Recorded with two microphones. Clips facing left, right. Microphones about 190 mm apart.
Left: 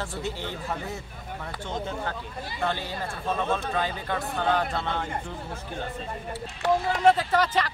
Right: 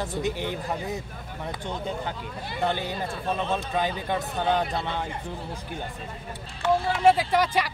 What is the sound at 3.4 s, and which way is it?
Speech, 20° right (ahead or behind).